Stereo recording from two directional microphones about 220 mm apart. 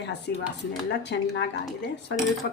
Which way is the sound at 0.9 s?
50° left (ahead or behind).